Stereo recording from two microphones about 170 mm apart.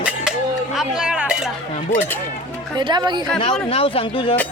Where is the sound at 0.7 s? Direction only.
Centre (ahead or behind).